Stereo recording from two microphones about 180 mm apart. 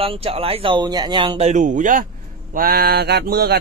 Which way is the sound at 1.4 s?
40° right (ahead or behind).